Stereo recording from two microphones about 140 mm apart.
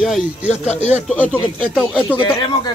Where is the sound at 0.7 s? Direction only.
55° left (ahead or behind).